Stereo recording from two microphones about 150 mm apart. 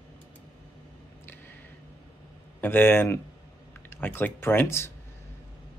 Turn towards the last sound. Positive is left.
turn(degrees=15)  # may be behind; listen again after turning